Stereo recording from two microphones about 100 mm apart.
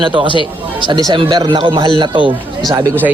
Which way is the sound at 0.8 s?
50° right (ahead or behind).